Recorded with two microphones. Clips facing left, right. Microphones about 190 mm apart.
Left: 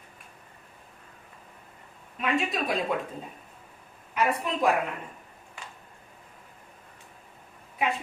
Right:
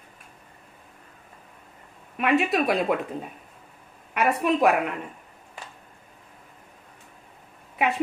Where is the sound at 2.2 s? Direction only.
70° right (ahead or behind).